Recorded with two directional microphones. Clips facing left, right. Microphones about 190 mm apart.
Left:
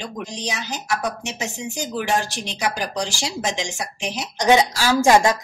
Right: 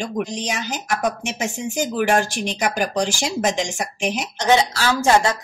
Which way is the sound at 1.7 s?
50° right (ahead or behind).